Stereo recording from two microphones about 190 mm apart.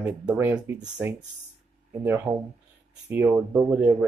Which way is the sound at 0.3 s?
10° right (ahead or behind).